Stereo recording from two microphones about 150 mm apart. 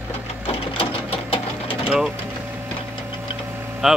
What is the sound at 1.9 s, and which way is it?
Speech, 5° right (ahead or behind).